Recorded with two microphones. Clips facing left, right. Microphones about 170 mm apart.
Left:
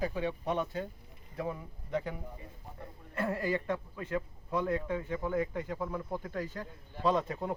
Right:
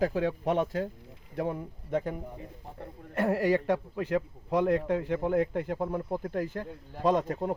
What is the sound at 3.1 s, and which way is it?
A man's voice, 75° right (ahead or behind).